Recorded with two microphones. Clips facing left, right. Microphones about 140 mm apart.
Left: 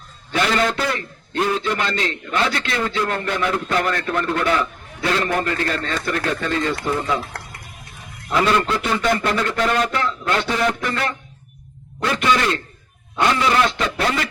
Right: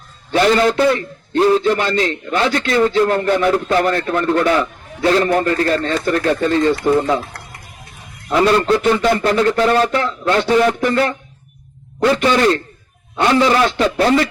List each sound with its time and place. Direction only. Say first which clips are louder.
0.3 s a man's voice: right 6 dB; 35° right (ahead or behind)
8.3 s a man's voice: right 5 dB; 35° right (ahead or behind)